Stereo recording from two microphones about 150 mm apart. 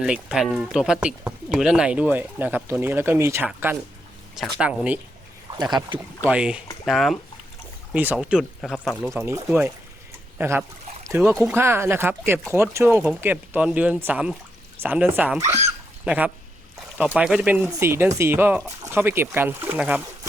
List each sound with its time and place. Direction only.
0.0 s speech: 5° right (ahead or behind)
4.4 s speech: centre (ahead or behind)
5.9 s speech: 35° right (ahead or behind)
6.2 s speech: 5° right (ahead or behind)
9.0 s speech: 15° right (ahead or behind)
11.0 s a sound: 15° right (ahead or behind)
11.4 s speech: 15° right (ahead or behind)